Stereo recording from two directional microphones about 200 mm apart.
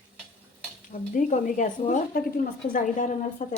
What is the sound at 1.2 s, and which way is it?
A woman's voice, 35° left (ahead or behind).